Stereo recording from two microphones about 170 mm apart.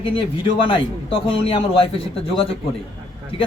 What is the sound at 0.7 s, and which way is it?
A man's voice, 35° left (ahead or behind).